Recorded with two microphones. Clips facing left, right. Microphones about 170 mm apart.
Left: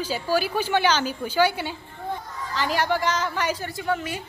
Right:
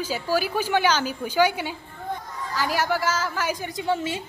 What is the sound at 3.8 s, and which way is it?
Speech, 25° right (ahead or behind).